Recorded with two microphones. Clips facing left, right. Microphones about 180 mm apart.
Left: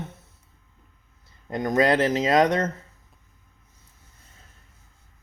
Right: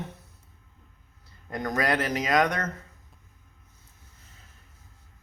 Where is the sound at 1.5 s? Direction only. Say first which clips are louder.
Left 6 dB; 20° left (ahead or behind).